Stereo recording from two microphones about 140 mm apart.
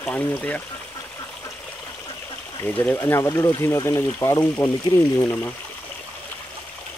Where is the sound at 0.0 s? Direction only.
10° left (ahead or behind).